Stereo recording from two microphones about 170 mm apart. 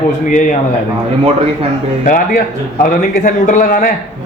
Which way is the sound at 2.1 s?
55° left (ahead or behind).